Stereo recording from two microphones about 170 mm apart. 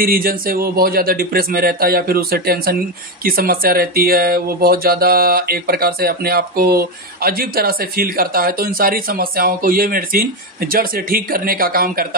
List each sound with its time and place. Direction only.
0.0 s speech: 60° right (ahead or behind)